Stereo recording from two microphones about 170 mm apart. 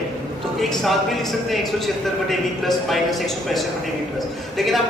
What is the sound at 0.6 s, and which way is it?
A man's voice, centre (ahead or behind).